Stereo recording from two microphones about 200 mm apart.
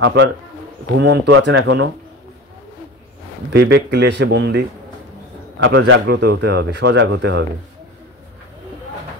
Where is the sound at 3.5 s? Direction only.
60° right (ahead or behind).